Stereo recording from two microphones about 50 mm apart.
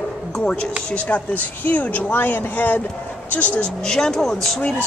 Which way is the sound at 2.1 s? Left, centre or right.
Left.